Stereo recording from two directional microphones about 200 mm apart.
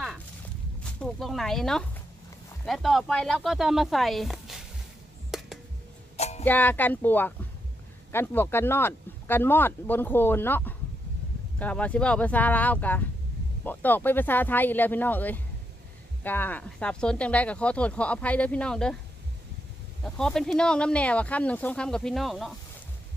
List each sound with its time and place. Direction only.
1.0 s speech: centre (ahead or behind)
5.3 s music: centre (ahead or behind)
6.1 s music: 35° left (ahead or behind)
6.4 s speech: 10° left (ahead or behind)
20.0 s speech: 5° left (ahead or behind)